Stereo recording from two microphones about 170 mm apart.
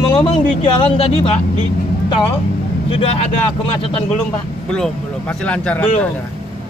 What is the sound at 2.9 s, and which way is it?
Speech, 35° left (ahead or behind).